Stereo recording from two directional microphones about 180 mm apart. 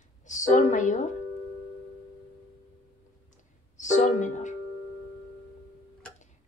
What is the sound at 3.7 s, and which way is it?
Music, 40° left (ahead or behind).